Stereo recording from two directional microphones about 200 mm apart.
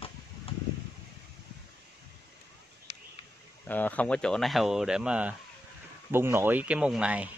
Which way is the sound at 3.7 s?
10° left (ahead or behind).